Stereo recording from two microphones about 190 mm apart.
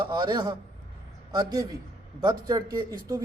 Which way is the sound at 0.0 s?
25° right (ahead or behind).